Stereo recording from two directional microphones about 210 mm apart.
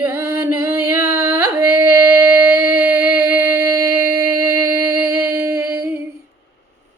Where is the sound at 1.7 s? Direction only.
10° right (ahead or behind).